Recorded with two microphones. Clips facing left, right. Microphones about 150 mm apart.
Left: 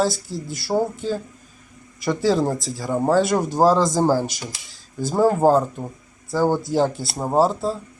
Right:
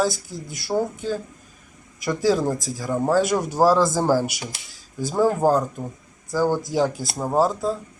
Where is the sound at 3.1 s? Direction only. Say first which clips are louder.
Left 1 dB; 10° right (ahead or behind).